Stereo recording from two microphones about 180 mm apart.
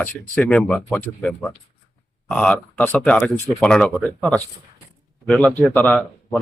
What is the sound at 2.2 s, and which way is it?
Speech, 5° left (ahead or behind).